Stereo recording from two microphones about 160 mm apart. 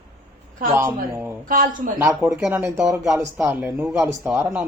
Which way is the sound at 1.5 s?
60° right (ahead or behind).